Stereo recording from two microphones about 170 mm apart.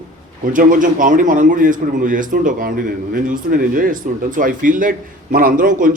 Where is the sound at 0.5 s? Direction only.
55° right (ahead or behind).